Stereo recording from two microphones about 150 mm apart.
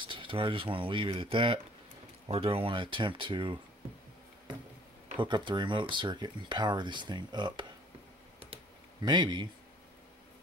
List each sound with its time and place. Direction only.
0.0 s speech: 35° right (ahead or behind)
5.2 s speech: 30° right (ahead or behind)
9.0 s speech: 30° right (ahead or behind)